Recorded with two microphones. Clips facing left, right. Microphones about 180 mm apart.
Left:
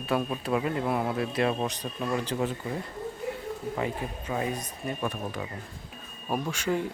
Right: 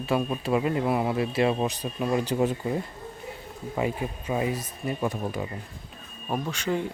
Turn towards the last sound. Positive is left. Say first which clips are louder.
# right 1 dB
turn(degrees=5)  # may be behind; listen again after turning